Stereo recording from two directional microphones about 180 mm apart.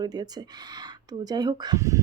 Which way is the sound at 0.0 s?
20° right (ahead or behind).